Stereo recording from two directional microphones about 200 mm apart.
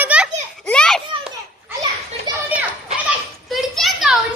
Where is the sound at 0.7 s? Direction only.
5° left (ahead or behind).